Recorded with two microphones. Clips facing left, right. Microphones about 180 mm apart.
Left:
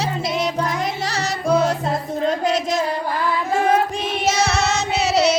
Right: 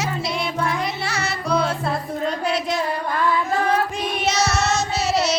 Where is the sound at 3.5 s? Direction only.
25° left (ahead or behind).